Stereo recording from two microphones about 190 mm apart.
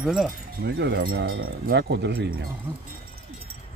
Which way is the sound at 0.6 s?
60° right (ahead or behind).